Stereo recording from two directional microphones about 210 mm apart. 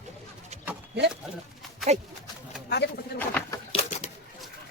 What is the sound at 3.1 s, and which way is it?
Bird, 10° left (ahead or behind).